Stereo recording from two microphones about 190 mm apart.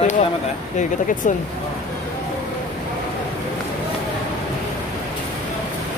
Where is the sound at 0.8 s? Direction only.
40° left (ahead or behind).